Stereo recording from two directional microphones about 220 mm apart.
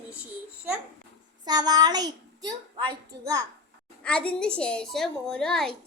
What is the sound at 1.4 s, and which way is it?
A child's voice, 20° right (ahead or behind).